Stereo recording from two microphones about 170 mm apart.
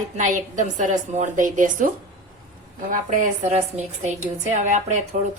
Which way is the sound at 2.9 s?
50° right (ahead or behind).